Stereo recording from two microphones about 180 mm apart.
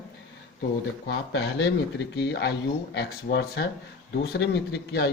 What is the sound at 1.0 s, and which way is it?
Speech, 65° left (ahead or behind).